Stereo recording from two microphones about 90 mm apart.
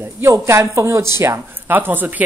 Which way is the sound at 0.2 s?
30° right (ahead or behind).